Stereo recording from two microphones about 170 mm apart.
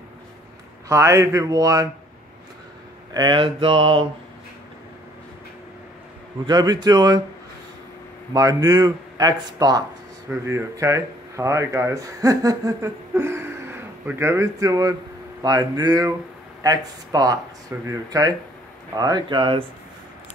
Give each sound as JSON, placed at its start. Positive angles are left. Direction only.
{"t": 0.8, "sound": "speech", "side_deg": -20}
{"t": 3.1, "sound": "speech", "side_deg": -25}
{"t": 6.4, "sound": "speech", "side_deg": -25}
{"t": 8.3, "sound": "speech", "side_deg": -20}